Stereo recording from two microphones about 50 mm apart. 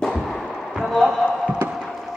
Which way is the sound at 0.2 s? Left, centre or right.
Centre.